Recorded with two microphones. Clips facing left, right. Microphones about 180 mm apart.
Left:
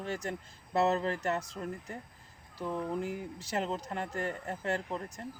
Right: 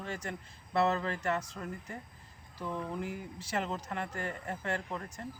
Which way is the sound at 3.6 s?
35° left (ahead or behind).